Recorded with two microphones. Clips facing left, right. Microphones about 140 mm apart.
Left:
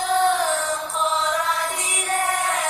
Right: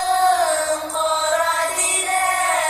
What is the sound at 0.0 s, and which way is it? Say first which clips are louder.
Music: right 3 dB; 90° right.